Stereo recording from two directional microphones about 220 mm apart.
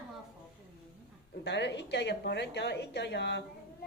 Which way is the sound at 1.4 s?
50° left (ahead or behind).